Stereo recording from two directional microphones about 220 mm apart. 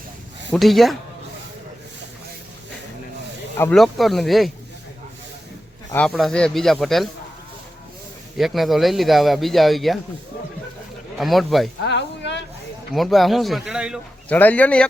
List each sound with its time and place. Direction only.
0.5 s speech: centre (ahead or behind)
3.6 s speech: 5° left (ahead or behind)
5.9 s speech: 5° left (ahead or behind)
8.4 s speech: centre (ahead or behind)
11.2 s speech: centre (ahead or behind)
11.8 s a sound: 50° left (ahead or behind)
12.9 s speech: centre (ahead or behind)